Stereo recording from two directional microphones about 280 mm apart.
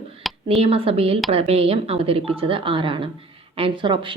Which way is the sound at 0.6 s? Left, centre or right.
Right.